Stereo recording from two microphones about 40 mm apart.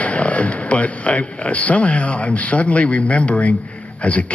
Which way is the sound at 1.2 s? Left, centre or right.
Left.